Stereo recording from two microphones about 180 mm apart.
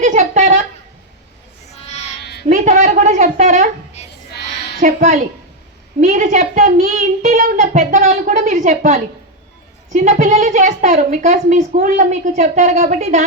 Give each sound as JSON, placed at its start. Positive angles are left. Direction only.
{"t": 0.0, "sound": "a sound", "side_deg": -40}
{"t": 1.8, "sound": "owl", "side_deg": 35}
{"t": 2.5, "sound": "a sound", "side_deg": -40}
{"t": 4.8, "sound": "a woman's voice", "side_deg": -55}
{"t": 6.0, "sound": "speech", "side_deg": -40}
{"t": 7.2, "sound": "a woman's voice", "side_deg": -40}